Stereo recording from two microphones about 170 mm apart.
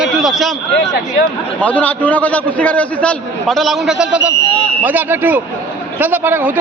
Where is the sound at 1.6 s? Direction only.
10° left (ahead or behind).